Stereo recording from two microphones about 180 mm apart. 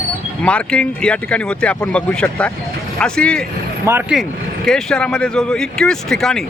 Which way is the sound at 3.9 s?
10° right (ahead or behind).